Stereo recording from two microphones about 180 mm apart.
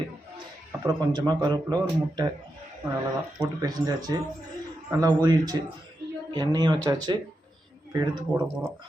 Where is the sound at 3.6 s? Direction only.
20° right (ahead or behind).